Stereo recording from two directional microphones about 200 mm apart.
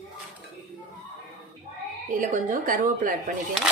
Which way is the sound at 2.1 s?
40° right (ahead or behind).